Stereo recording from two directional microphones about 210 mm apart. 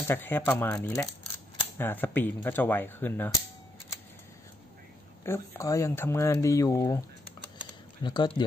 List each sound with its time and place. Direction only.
0.0 s speech: 10° left (ahead or behind)
5.2 s speech: 10° left (ahead or behind)